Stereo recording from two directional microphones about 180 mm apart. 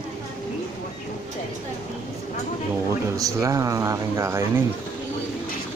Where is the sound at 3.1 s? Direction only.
20° right (ahead or behind).